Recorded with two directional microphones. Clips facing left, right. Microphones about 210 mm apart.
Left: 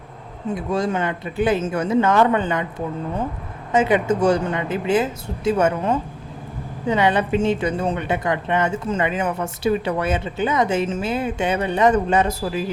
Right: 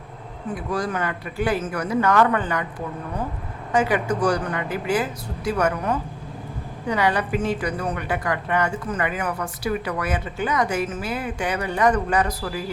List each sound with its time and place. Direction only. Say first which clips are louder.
0.5 s a woman's voice: left 4 dB; 25° left (ahead or behind)
3.7 s a woman's voice: left 4 dB; 20° left (ahead or behind)